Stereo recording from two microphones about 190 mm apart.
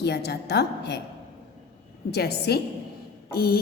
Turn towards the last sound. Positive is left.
turn(degrees=55)  # may be behind; listen again after turning